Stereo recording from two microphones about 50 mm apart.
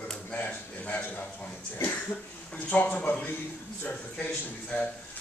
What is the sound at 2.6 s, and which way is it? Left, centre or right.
A man's voice, left.